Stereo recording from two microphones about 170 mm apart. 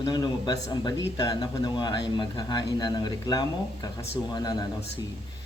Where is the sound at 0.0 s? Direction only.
25° left (ahead or behind).